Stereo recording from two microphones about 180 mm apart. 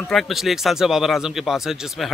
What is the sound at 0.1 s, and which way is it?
Speech, centre (ahead or behind).